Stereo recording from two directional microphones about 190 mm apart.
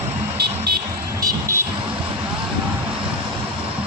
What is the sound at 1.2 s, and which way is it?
Vehicle, 15° right (ahead or behind).